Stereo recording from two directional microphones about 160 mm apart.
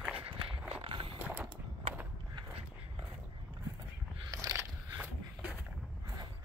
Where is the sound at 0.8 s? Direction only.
30° right (ahead or behind).